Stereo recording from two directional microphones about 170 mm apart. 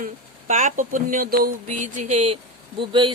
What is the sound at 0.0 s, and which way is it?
Speech, 50° right (ahead or behind).